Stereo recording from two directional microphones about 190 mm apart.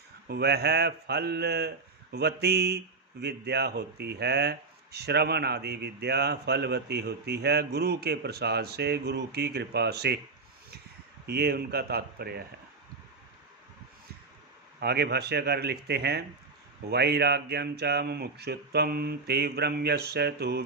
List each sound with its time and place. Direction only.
0.3 s speech: 60° right (ahead or behind)
11.3 s speech: 55° right (ahead or behind)
14.8 s speech: 60° right (ahead or behind)